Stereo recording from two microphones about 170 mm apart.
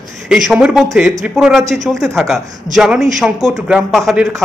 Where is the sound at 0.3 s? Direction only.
5° right (ahead or behind).